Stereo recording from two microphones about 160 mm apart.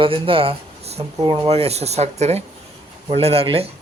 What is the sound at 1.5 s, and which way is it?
Speech, 40° right (ahead or behind).